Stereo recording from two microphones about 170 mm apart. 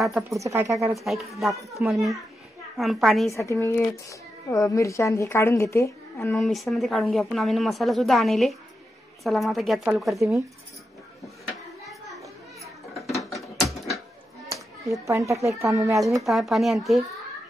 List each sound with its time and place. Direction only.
0.3 s speech: 15° right (ahead or behind)
0.9 s a woman's voice: centre (ahead or behind)
3.3 s a woman's voice: 15° left (ahead or behind)
6.3 s a woman's voice: centre (ahead or behind)
13.2 s mechanisms: centre (ahead or behind)
13.7 s a sound: centre (ahead or behind)
14.9 s speech: 20° right (ahead or behind)
16.1 s a woman's voice: centre (ahead or behind)